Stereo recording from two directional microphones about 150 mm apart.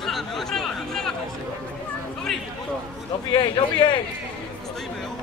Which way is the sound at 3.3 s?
30° left (ahead or behind).